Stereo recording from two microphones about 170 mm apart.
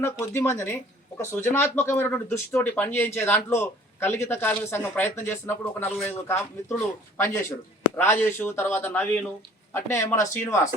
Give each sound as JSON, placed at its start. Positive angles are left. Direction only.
{"t": 0.0, "sound": "speech", "side_deg": 15}
{"t": 7.9, "sound": "speech", "side_deg": 15}